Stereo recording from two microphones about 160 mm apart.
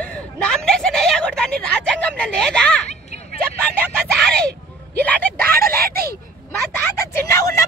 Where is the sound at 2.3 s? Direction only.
5° left (ahead or behind).